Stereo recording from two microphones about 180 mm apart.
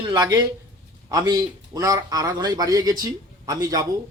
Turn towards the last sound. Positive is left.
turn(degrees=-20)  # may be behind; listen again after turning